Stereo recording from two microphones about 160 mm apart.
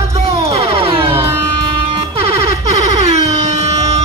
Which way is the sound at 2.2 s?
40° right (ahead or behind).